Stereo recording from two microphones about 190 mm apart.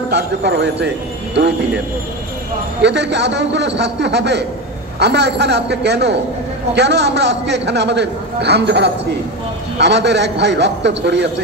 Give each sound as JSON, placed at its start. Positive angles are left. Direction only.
{"t": 0.1, "sound": "a man's voice", "side_deg": -65}
{"t": 2.8, "sound": "a man's voice", "side_deg": -65}